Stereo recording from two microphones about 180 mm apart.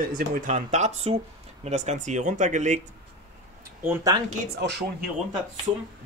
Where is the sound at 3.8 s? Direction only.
20° right (ahead or behind).